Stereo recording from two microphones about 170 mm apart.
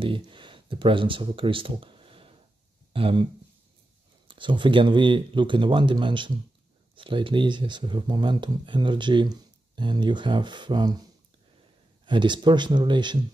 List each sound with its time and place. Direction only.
0.0 s speech: 30° right (ahead or behind)
4.3 s speech: 30° right (ahead or behind)
12.1 s speech: 25° right (ahead or behind)